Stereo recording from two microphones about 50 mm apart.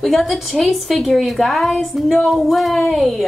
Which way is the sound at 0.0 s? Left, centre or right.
Centre.